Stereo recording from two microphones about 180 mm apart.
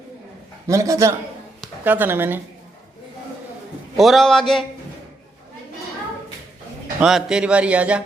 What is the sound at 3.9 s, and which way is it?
Speech, centre (ahead or behind).